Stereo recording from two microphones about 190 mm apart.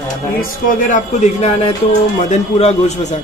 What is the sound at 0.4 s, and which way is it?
Speech, 45° left (ahead or behind).